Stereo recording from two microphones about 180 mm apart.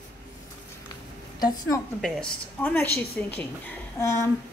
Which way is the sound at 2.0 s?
5° left (ahead or behind).